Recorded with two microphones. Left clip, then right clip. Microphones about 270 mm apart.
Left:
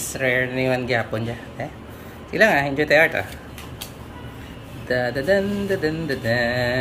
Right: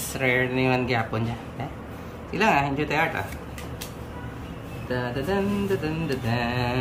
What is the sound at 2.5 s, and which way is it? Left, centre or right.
Speech, right.